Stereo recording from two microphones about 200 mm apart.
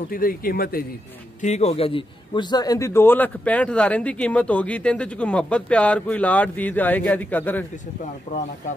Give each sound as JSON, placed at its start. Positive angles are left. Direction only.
{"t": 0.1, "sound": "a man's voice", "side_deg": 45}
{"t": 1.4, "sound": "a man's voice", "side_deg": 35}
{"t": 8.3, "sound": "speech", "side_deg": 35}